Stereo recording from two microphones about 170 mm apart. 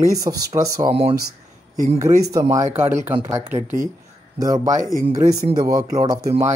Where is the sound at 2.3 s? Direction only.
20° right (ahead or behind).